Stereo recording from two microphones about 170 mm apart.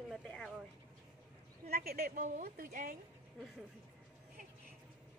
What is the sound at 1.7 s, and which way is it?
A woman's voice, 65° right (ahead or behind).